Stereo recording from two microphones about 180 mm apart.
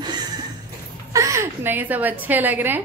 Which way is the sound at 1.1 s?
15° right (ahead or behind).